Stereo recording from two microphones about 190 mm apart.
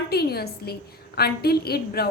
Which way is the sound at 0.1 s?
55° left (ahead or behind).